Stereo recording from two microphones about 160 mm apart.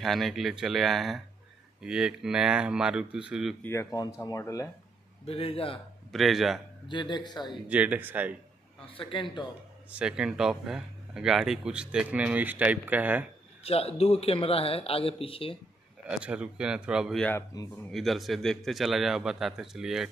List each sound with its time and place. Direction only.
0.0 s speech: centre (ahead or behind)
3.6 s speech: 20° left (ahead or behind)
5.2 s speech: 40° left (ahead or behind)
6.1 s speech: centre (ahead or behind)
6.9 s speech: 30° left (ahead or behind)
7.6 s speech: 10° right (ahead or behind)
8.8 s speech: 35° left (ahead or behind)
9.8 s speech: 5° right (ahead or behind)
13.7 s speech: 40° left (ahead or behind)
16.1 s speech: 5° right (ahead or behind)
17.3 s speech: 15° left (ahead or behind)
17.9 s speech: centre (ahead or behind)